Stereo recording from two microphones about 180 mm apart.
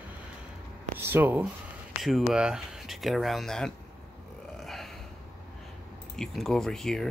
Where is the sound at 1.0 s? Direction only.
10° right (ahead or behind).